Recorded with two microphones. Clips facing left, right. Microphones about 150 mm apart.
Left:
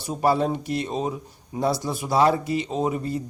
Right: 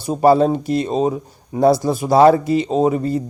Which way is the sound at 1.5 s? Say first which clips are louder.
Right 10 dB; 45° right (ahead or behind).